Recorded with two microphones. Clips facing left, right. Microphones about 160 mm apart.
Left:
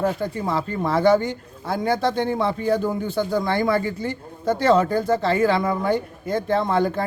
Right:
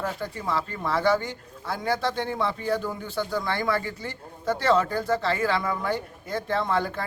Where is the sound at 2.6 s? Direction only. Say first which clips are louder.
Left 6 dB; 20° left (ahead or behind).